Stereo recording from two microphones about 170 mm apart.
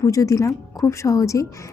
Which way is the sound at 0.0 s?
20° left (ahead or behind).